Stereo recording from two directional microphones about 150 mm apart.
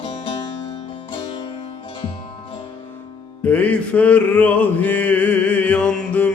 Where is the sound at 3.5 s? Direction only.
10° left (ahead or behind).